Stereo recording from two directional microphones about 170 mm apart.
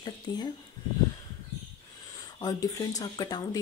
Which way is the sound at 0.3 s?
20° left (ahead or behind).